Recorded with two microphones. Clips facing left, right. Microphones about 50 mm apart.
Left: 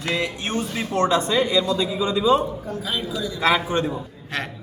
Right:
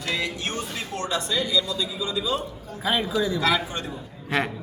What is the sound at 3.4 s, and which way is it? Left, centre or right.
Speech, left.